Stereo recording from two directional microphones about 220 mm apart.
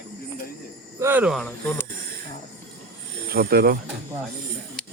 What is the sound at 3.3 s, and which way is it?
Speech, 45° right (ahead or behind).